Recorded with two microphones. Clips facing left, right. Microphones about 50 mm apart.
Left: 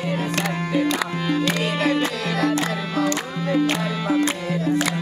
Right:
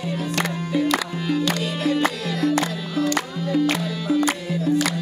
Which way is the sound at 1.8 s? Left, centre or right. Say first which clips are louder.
Right 2 dB; left.